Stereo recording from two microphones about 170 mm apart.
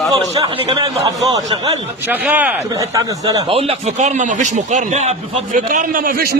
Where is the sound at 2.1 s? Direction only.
10° right (ahead or behind).